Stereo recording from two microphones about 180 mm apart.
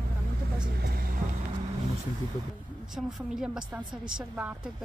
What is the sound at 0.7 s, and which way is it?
Speech, 60° right (ahead or behind).